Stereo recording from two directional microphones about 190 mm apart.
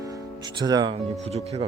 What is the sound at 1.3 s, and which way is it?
Speech, 35° right (ahead or behind).